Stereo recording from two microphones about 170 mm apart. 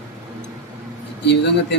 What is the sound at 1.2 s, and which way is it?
Speech, 90° left.